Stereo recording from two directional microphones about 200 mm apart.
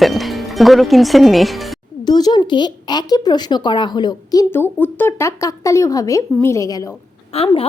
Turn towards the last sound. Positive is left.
turn(degrees=30)  # may be behind; listen again after turning